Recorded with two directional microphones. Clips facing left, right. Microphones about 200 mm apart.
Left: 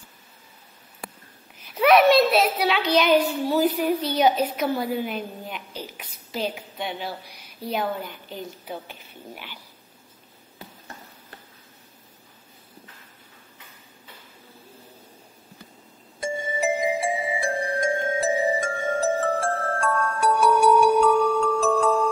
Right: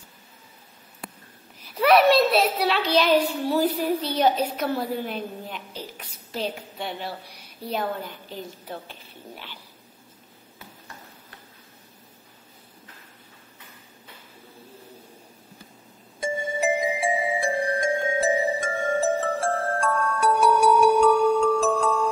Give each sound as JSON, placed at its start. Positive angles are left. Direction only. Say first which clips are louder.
{"t": 1.8, "sound": "a child's voice", "louder": "left 1 dB", "side_deg": 0}
{"t": 2.0, "sound": "a child's voice", "louder": "left 1 dB", "side_deg": -30}
{"t": 3.1, "sound": "a woman's voice", "louder": "left 1 dB", "side_deg": 0}
{"t": 8.6, "sound": "speech", "louder": "left 1 dB", "side_deg": 5}
{"t": 16.2, "sound": "music", "louder": "right 1 dB", "side_deg": 0}